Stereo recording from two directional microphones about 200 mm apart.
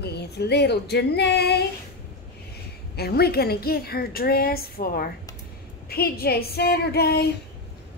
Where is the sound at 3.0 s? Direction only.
50° left (ahead or behind).